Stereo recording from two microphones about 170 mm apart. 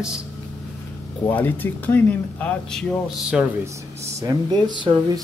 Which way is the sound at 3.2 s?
5° right (ahead or behind).